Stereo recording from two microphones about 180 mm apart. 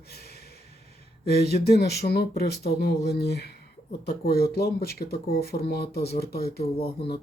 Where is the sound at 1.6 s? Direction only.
60° left (ahead or behind).